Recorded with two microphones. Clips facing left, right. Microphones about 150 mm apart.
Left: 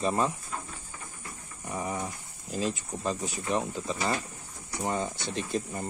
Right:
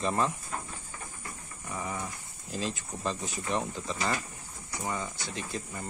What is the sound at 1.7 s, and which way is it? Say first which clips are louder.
Speech: left 3 dB; 20° left (ahead or behind).